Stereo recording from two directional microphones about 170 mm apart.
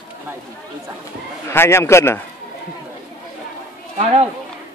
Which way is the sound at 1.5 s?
15° left (ahead or behind).